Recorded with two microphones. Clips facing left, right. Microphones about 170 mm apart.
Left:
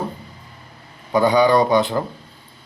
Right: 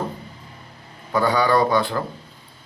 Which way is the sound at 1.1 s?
15° left (ahead or behind).